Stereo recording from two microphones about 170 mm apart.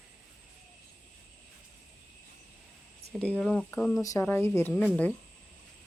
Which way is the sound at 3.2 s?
5° left (ahead or behind).